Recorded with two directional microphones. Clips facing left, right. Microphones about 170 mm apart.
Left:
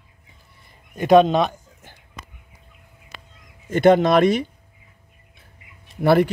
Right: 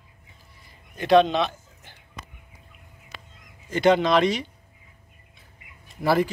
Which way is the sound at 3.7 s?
50° left (ahead or behind).